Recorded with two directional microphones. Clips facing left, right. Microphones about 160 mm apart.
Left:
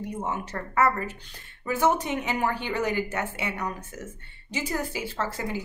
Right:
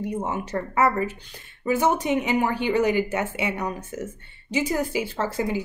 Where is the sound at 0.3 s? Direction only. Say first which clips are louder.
Right 4 dB; 15° right (ahead or behind).